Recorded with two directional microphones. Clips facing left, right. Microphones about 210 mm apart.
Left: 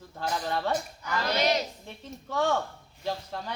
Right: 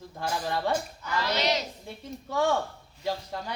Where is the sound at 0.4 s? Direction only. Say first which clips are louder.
Right 1 dB; 15° right (ahead or behind).